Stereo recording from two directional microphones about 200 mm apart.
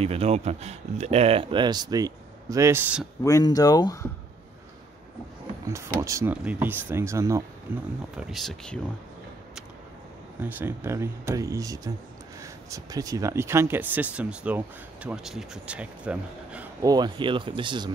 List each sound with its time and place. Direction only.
0.0 s speech: 30° right (ahead or behind); by 3.1 s 5° right (ahead or behind)
3.3 s speech: 15° left (ahead or behind)
5.9 s speech: 15° right (ahead or behind); by 8.8 s 5° left (ahead or behind)
10.6 s speech: 10° right (ahead or behind)
16.8 s speech: 20° right (ahead or behind)